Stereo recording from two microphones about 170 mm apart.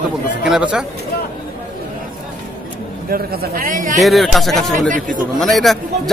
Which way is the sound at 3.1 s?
65° right (ahead or behind).